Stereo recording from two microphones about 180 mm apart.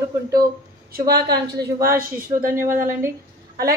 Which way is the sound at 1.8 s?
50° right (ahead or behind).